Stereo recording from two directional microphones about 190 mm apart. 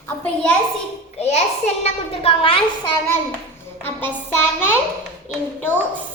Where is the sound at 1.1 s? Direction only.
35° left (ahead or behind).